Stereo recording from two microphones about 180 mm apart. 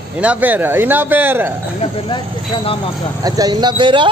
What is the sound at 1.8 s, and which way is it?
Speech, 30° left (ahead or behind).